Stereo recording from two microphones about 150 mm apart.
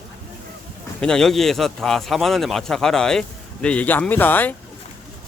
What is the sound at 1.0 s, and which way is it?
Speech, 5° left (ahead or behind).